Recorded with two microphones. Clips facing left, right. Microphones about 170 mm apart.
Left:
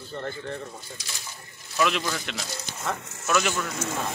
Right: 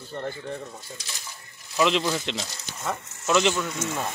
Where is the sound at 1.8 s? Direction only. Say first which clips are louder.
Right 3 dB; 25° right (ahead or behind).